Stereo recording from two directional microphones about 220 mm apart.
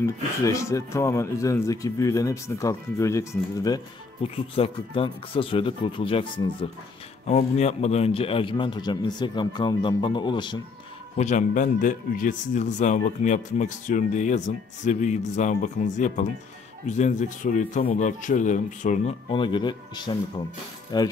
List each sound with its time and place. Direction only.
0.0 s a man's voice: 15° left (ahead or behind)
11.1 s a man's voice: 35° left (ahead or behind); by 21.1 s 20° left (ahead or behind)